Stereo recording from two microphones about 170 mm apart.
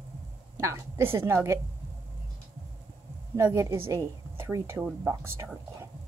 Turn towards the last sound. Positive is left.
turn(degrees=-10)  # may be behind; listen again after turning